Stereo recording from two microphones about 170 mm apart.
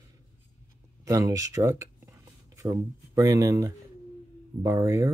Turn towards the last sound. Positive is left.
turn(degrees=-15)  # may be behind; listen again after turning